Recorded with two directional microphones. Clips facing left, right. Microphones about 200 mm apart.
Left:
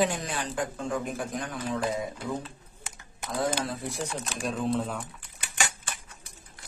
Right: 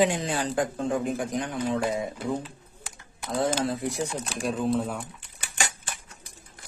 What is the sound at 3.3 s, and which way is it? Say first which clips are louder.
Speech: right 4 dB; 25° right (ahead or behind).